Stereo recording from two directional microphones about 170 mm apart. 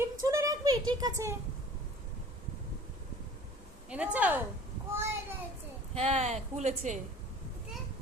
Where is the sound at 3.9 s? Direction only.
10° right (ahead or behind).